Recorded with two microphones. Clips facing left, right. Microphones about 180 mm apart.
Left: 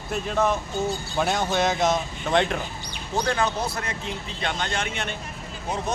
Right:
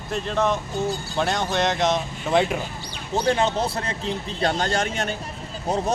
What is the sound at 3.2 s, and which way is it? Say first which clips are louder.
A man's voice: right 5 dB; 25° right (ahead or behind).